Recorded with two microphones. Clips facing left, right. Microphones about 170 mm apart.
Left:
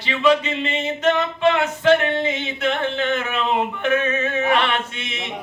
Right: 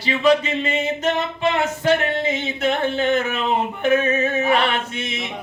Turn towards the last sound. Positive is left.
turn(degrees=-40)  # may be behind; listen again after turning